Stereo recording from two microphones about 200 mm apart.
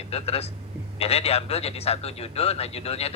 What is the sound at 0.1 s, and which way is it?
Speech, 30° left (ahead or behind).